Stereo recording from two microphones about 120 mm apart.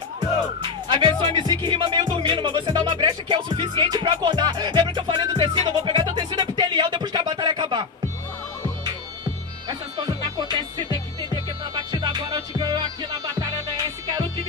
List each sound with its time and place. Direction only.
0.8 s speech: 45° right (ahead or behind)
8.8 s music: 35° right (ahead or behind)